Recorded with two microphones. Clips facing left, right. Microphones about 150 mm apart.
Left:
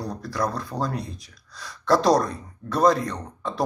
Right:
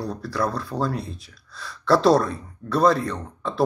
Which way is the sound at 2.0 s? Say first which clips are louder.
Right 2 dB; 15° left (ahead or behind).